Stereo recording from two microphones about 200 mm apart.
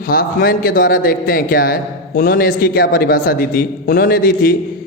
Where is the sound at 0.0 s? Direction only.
45° left (ahead or behind).